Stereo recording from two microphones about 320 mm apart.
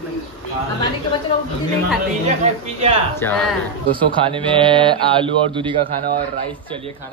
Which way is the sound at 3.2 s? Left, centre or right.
Centre.